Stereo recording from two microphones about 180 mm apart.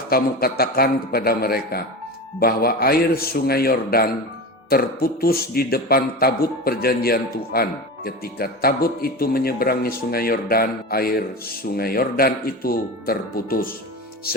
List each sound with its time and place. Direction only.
0.1 s speech: 60° left (ahead or behind)